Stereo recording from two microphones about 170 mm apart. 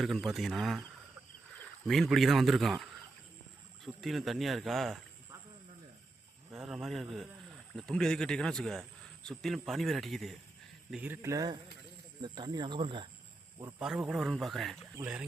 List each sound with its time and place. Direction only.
0.0 s speech: centre (ahead or behind)
1.9 s speech: centre (ahead or behind)
6.5 s a man's voice: 5° right (ahead or behind)
10.9 s speech: 10° right (ahead or behind); by 13.1 s 30° right (ahead or behind)
13.6 s speech: 15° right (ahead or behind)
13.8 s speech: 5° right (ahead or behind)